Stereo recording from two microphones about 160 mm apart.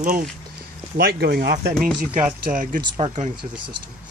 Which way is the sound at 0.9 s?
80° right.